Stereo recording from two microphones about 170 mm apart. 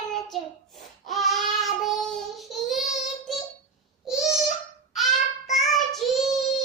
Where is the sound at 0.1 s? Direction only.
Centre (ahead or behind).